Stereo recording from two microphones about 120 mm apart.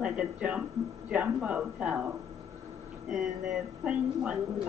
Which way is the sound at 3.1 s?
5° right (ahead or behind).